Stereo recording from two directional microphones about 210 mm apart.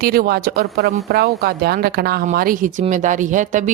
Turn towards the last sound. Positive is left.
turn(degrees=-35)  # may be behind; listen again after turning